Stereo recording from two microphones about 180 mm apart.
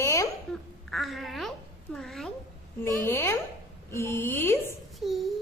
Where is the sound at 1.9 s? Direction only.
Centre (ahead or behind).